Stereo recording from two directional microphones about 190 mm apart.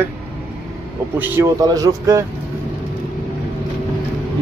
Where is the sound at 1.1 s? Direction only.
10° right (ahead or behind).